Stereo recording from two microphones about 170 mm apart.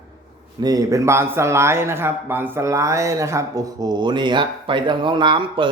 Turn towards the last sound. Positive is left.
turn(degrees=-30)  # may be behind; listen again after turning